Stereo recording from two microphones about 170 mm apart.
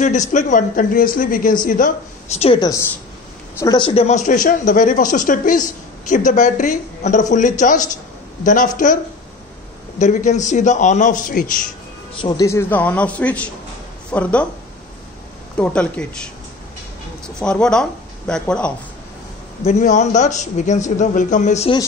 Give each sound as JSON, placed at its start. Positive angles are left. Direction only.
{"t": 0.0, "sound": "speech", "side_deg": 45}
{"t": 2.3, "sound": "a woman's voice", "side_deg": 35}
{"t": 3.5, "sound": "speech", "side_deg": 25}
{"t": 12.2, "sound": "a man's voice", "side_deg": 25}
{"t": 15.5, "sound": "a man's voice", "side_deg": 5}
{"t": 17.4, "sound": "speech", "side_deg": 5}
{"t": 19.6, "sound": "speech", "side_deg": 45}